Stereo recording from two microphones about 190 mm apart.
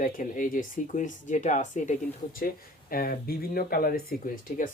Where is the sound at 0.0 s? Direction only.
45° left (ahead or behind).